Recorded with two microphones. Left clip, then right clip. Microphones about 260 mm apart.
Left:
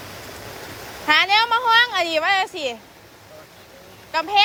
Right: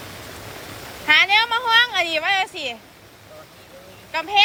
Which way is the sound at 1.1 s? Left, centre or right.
Centre.